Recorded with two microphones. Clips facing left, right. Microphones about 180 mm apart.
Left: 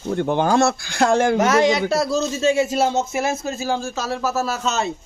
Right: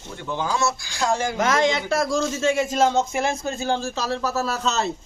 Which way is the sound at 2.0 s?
20° left (ahead or behind).